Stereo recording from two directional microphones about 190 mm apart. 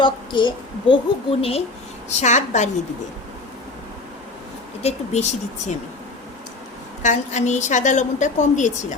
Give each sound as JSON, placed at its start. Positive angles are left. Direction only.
{"t": 0.0, "sound": "a child's voice", "side_deg": 25}
{"t": 4.8, "sound": "a woman's voice", "side_deg": 35}
{"t": 7.0, "sound": "a woman's voice", "side_deg": 40}